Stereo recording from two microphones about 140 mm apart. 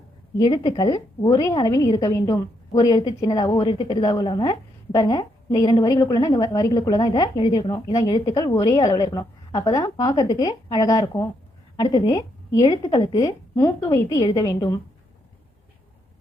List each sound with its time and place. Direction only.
0.3 s a woman's voice: 30° left (ahead or behind)